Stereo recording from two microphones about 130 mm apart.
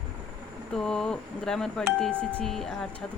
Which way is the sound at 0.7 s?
5° left (ahead or behind).